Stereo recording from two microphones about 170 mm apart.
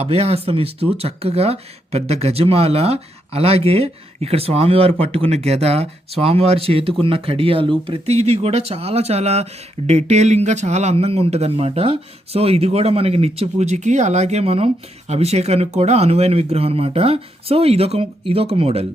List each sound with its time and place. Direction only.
0.0 s speech: 35° right (ahead or behind)